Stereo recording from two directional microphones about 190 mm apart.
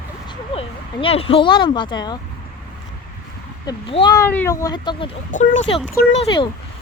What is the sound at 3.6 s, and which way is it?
Speech, 25° left (ahead or behind).